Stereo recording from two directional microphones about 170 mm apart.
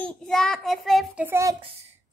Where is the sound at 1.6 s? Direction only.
35° right (ahead or behind).